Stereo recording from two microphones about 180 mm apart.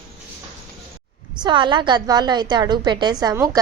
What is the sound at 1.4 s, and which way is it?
A woman's voice, 25° right (ahead or behind).